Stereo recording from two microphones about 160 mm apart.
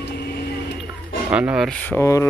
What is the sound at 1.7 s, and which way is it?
Speech, 10° left (ahead or behind).